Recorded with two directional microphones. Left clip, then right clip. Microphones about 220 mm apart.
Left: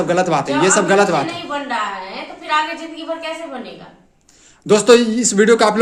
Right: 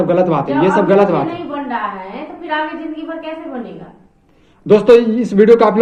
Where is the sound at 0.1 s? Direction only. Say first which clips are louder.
Right 2 dB; 35° left (ahead or behind).